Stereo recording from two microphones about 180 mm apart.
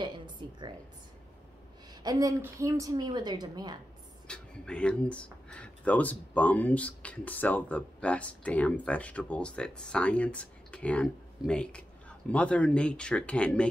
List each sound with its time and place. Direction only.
0.0 s a woman's voice: 25° right (ahead or behind)
2.0 s a woman's voice: 20° right (ahead or behind)
4.3 s speech: 5° left (ahead or behind)